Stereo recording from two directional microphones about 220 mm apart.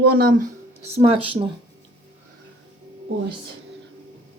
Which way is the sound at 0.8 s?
25° right (ahead or behind).